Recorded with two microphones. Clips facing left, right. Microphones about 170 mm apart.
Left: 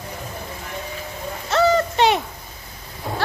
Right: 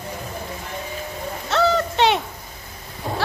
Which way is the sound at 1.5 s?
Centre (ahead or behind).